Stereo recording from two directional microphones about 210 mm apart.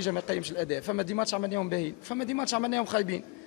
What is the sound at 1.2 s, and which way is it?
Speech, 20° left (ahead or behind).